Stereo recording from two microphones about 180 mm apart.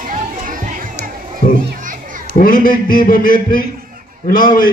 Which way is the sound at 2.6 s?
50° left (ahead or behind).